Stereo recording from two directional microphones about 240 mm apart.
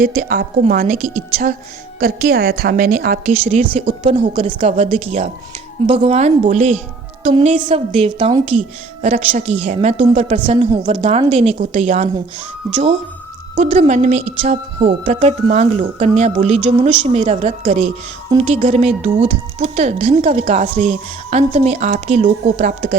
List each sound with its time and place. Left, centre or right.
0.0 s a woman's voice: right
13.6 s speech: right